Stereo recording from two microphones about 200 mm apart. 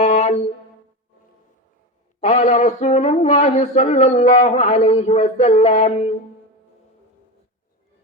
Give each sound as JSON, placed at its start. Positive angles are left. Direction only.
{"t": 0.0, "sound": "music", "side_deg": 35}
{"t": 2.2, "sound": "speech", "side_deg": 35}